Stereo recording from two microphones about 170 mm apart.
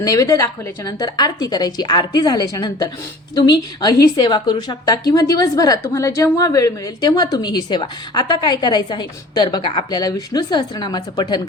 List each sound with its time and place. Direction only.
0.0 s a woman's voice: 20° left (ahead or behind)